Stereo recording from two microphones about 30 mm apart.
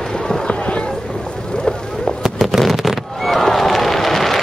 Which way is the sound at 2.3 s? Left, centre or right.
Centre.